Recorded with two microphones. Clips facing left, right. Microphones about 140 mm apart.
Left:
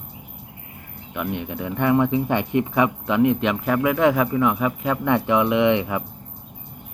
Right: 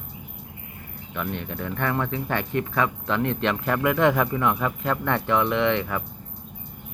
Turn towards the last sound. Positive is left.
turn(degrees=15)  # may be behind; listen again after turning